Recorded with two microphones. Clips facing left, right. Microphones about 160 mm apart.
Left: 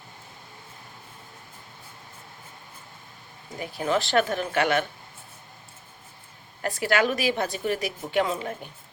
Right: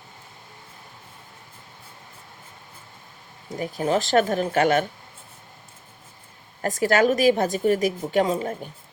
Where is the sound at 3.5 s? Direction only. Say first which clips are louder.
Right 3 dB; 40° right (ahead or behind).